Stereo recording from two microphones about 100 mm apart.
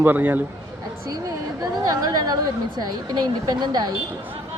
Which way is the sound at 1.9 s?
40° right (ahead or behind).